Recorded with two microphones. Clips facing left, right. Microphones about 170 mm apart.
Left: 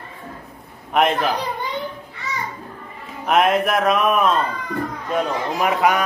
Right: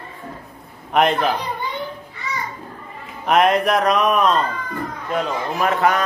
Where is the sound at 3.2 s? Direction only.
Centre (ahead or behind).